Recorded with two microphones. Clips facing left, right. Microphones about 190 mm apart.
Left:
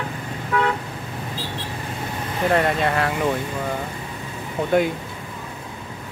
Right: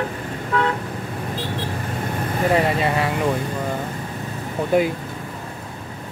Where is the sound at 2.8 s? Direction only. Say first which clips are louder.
Right 1 dB; 5° right (ahead or behind).